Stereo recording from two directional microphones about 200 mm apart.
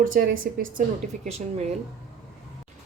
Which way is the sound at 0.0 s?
45° right (ahead or behind).